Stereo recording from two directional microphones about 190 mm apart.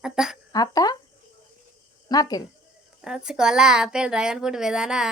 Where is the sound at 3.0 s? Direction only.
5° right (ahead or behind).